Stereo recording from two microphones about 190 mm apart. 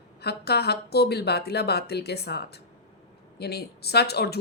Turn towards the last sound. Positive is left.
turn(degrees=60)  # may be behind; listen again after turning